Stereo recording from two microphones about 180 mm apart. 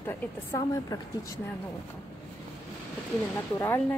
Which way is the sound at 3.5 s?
15° left (ahead or behind).